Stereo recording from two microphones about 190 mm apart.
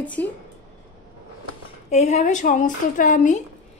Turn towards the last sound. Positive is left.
turn(degrees=40)  # may be behind; listen again after turning